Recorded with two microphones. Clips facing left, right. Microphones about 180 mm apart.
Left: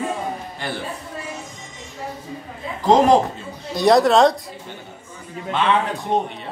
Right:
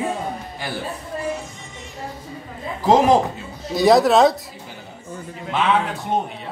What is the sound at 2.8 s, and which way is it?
Speech, 5° right (ahead or behind).